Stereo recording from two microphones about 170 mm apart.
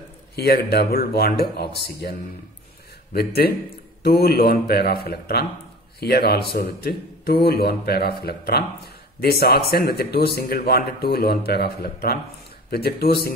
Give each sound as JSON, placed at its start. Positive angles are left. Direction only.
{"t": 0.4, "sound": "a man's voice", "side_deg": 70}